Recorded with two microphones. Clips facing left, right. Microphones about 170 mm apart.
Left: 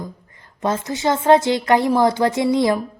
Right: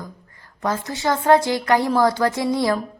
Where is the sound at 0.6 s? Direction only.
20° left (ahead or behind).